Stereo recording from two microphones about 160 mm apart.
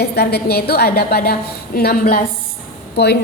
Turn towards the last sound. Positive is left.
turn(degrees=90)